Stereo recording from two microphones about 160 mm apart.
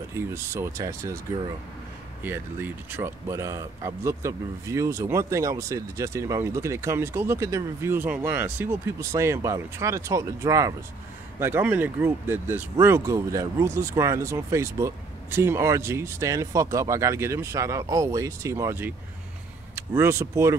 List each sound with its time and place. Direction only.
0.1 s speech: 15° right (ahead or behind)
2.2 s speech: 15° right (ahead or behind)